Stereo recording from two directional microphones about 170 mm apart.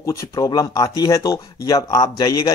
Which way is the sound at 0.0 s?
20° left (ahead or behind).